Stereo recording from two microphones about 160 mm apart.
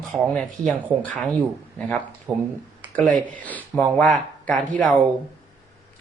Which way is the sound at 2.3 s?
25° right (ahead or behind).